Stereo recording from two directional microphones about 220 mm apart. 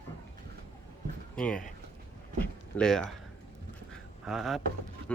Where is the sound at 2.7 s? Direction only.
5° left (ahead or behind).